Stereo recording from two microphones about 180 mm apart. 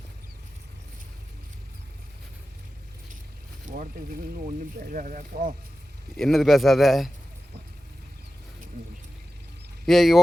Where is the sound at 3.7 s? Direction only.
50° right (ahead or behind).